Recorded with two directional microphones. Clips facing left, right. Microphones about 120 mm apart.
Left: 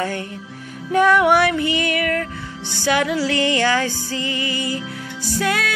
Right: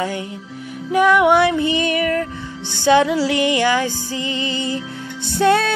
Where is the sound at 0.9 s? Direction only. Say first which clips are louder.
Right 1 dB; 15° right (ahead or behind).